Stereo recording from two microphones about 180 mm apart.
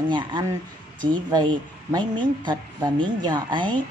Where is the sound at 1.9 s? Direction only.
25° right (ahead or behind).